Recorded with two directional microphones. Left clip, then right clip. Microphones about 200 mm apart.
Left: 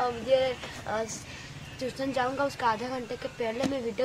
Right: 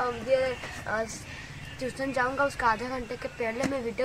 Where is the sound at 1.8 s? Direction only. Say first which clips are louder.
Right 1 dB; 5° left (ahead or behind).